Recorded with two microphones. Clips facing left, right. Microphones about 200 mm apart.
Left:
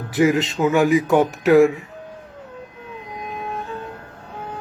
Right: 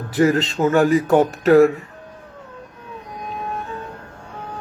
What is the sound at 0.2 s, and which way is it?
Speech, 40° right (ahead or behind).